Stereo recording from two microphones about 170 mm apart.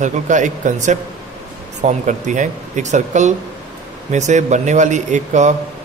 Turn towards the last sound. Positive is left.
turn(degrees=-45)  # may be behind; listen again after turning